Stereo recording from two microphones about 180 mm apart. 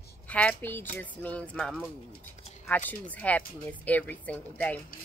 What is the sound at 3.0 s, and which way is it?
Speech, 10° left (ahead or behind).